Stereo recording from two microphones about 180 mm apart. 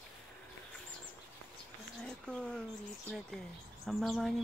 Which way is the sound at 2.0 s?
5° left (ahead or behind).